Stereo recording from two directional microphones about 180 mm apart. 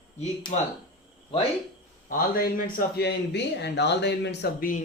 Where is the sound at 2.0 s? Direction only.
50° left (ahead or behind); by 4.7 s 70° left (ahead or behind).